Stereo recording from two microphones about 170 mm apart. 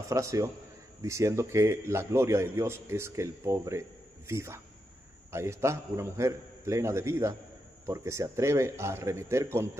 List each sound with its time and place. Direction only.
0.1 s a man's voice: 20° right (ahead or behind)